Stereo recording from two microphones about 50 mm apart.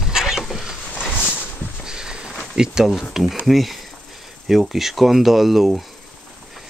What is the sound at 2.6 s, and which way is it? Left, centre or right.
Speech, centre.